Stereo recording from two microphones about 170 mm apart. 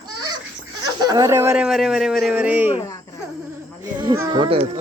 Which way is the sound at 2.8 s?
15° left (ahead or behind).